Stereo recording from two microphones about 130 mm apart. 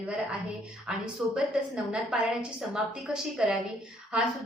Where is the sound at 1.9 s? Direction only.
5° right (ahead or behind).